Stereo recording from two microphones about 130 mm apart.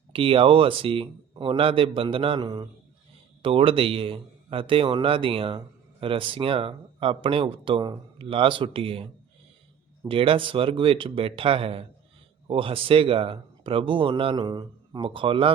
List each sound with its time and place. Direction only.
0.1 s a man's voice: 45° right (ahead or behind)
10.1 s a man's voice: 45° right (ahead or behind)
14.4 s a man's voice: 30° right (ahead or behind)